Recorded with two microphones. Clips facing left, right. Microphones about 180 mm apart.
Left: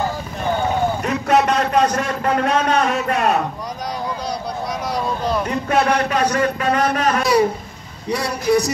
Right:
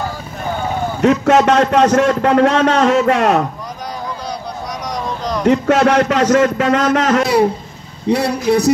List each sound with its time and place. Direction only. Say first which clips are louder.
1.0 s a man's voice: right 9 dB; 70° right (ahead or behind)
4.9 s a sound: even; 5° left (ahead or behind)
5.4 s a man's voice: right 10 dB; 70° right (ahead or behind)